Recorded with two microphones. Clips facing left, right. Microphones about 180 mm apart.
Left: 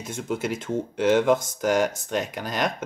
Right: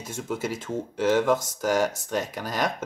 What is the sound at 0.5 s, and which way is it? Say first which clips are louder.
Speech: left 3 dB; 5° right (ahead or behind).